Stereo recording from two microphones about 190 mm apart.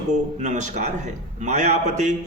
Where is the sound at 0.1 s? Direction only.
40° right (ahead or behind).